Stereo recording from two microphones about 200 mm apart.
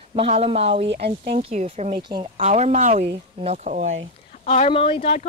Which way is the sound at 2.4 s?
35° right (ahead or behind).